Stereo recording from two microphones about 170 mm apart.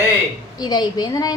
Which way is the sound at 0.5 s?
25° left (ahead or behind).